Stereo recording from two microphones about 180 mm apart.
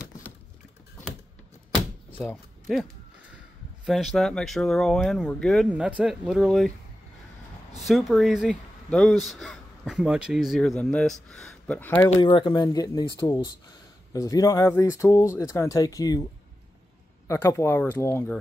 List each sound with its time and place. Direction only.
2.0 s a sound: 10° left (ahead or behind)
3.8 s speech: centre (ahead or behind)
7.8 s speech: centre (ahead or behind)
12.2 s speech: 25° left (ahead or behind)
17.3 s speech: 15° left (ahead or behind)